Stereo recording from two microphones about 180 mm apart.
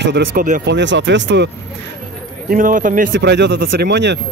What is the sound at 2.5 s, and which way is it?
Speech, 50° right (ahead or behind).